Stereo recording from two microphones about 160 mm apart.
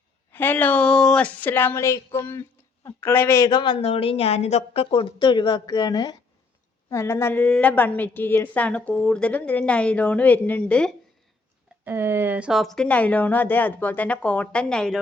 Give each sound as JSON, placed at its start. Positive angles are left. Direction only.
{"t": 0.3, "sound": "a woman's voice", "side_deg": 10}
{"t": 11.9, "sound": "a woman's voice", "side_deg": -15}